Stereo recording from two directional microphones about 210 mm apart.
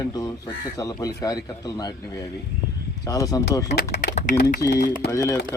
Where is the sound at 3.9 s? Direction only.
35° left (ahead or behind).